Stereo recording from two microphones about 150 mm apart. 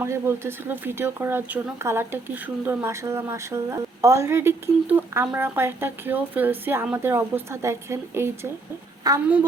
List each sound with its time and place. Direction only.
0.0 s speech: 15° right (ahead or behind)